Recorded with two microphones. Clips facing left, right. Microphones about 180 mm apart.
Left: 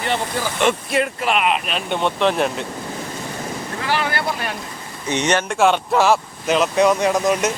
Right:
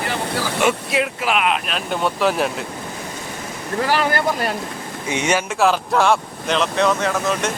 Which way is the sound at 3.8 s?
40° right (ahead or behind).